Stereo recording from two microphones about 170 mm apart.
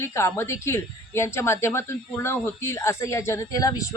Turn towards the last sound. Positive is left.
turn(degrees=20)  # may be behind; listen again after turning